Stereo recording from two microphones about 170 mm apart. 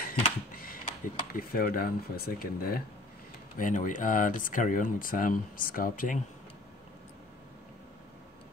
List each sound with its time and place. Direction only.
0.0 s speech: 60° left (ahead or behind)
3.5 s speech: 50° left (ahead or behind)